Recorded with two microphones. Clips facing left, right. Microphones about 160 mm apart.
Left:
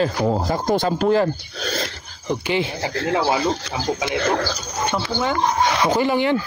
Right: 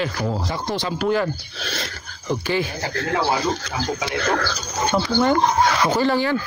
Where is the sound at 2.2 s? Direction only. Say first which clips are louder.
Left 1 dB; 20° left (ahead or behind).